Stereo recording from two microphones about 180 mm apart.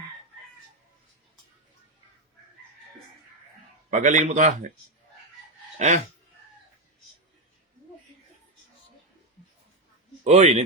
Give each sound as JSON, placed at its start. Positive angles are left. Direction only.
{"t": 3.8, "sound": "a man's voice", "side_deg": -45}
{"t": 5.8, "sound": "speech", "side_deg": -40}
{"t": 10.2, "sound": "speech", "side_deg": -40}